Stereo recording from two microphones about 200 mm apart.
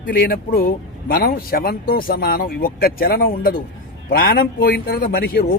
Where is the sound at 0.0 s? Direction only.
45° left (ahead or behind).